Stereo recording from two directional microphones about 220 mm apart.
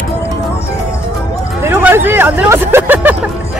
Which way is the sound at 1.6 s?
10° right (ahead or behind).